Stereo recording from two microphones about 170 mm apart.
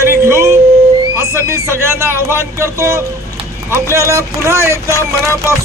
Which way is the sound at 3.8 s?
15° left (ahead or behind).